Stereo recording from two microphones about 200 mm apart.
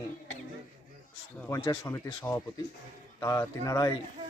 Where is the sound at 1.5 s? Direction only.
20° left (ahead or behind).